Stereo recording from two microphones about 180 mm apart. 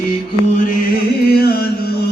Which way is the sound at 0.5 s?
50° left (ahead or behind).